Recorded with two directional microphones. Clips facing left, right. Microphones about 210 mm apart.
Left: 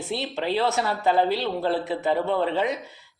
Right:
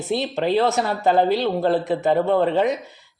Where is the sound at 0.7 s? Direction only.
45° right (ahead or behind).